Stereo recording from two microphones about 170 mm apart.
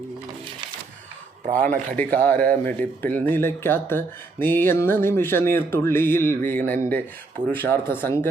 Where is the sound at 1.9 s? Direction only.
10° left (ahead or behind).